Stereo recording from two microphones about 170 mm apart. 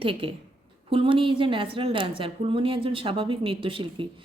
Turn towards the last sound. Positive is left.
turn(degrees=-30)  # may be behind; listen again after turning